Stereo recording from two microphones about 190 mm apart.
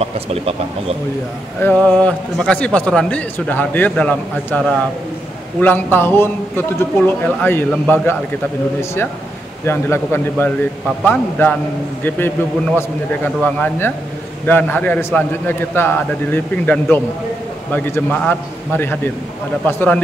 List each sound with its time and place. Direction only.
0.0 s speech: 30° right (ahead or behind)
1.6 s a man's voice: 10° left (ahead or behind)
9.7 s a man's voice: 15° left (ahead or behind)